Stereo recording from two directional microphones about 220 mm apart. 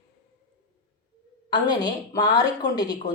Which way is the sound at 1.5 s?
20° left (ahead or behind).